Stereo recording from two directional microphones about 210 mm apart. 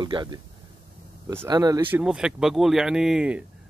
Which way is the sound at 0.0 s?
20° right (ahead or behind).